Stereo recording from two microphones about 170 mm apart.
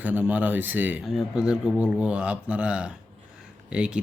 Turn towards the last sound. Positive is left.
turn(degrees=-5)  # may be behind; listen again after turning